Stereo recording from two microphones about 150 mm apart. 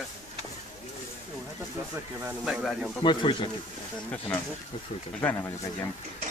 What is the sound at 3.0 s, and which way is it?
Speech, 30° left (ahead or behind).